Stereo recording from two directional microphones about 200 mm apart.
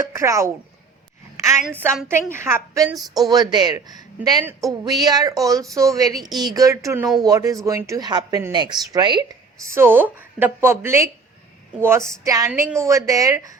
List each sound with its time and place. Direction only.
0.1 s speech: 15° right (ahead or behind)
1.6 s a woman's voice: 10° right (ahead or behind)